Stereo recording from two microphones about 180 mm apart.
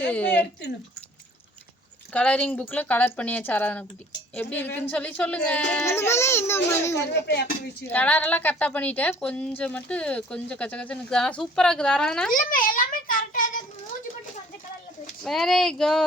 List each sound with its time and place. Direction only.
0.0 s a woman's voice: 10° left (ahead or behind)
2.1 s a woman's voice: 5° left (ahead or behind)
7.3 s speech: 70° left (ahead or behind)
7.9 s a woman's voice: 10° left (ahead or behind)
12.3 s a child's voice: 50° left (ahead or behind)
15.2 s male singing: centre (ahead or behind)